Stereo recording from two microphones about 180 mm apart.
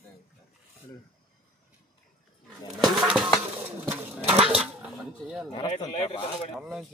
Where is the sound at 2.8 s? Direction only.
5° right (ahead or behind).